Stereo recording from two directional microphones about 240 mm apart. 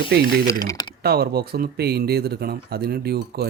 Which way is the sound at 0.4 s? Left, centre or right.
Centre.